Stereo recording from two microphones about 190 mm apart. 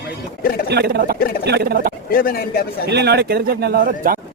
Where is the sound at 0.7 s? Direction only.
55° right (ahead or behind).